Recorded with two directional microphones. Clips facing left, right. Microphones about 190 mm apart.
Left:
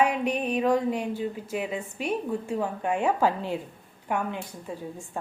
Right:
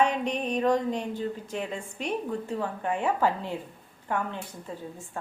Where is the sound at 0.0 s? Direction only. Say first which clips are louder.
Left 1 dB; 5° left (ahead or behind).